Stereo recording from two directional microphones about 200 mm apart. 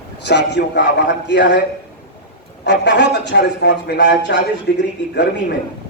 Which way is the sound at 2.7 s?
60° left (ahead or behind).